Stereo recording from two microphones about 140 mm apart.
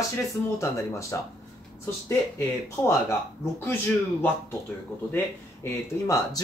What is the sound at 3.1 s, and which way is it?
Speech, 15° left (ahead or behind).